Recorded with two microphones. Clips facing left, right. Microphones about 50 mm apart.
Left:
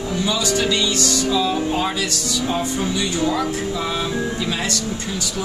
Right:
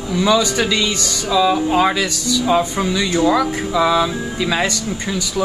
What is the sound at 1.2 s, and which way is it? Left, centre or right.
Music, right.